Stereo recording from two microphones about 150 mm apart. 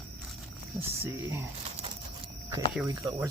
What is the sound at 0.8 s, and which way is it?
Speech, 15° right (ahead or behind).